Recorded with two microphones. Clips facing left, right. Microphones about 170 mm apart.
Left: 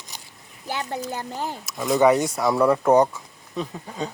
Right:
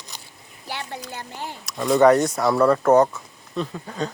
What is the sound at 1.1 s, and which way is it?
Speech, 40° left (ahead or behind).